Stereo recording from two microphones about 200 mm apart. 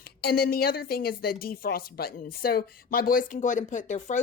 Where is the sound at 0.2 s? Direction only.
50° left (ahead or behind).